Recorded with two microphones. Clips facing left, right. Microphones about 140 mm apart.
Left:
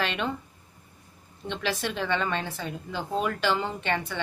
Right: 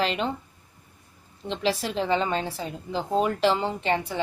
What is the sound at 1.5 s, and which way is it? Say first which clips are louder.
A woman's voice: right 4 dB; 30° right (ahead or behind).